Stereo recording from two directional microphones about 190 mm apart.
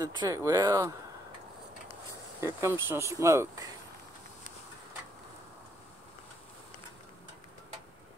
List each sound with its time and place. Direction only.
0.0 s speech: 20° right (ahead or behind)
2.4 s speech: 15° right (ahead or behind)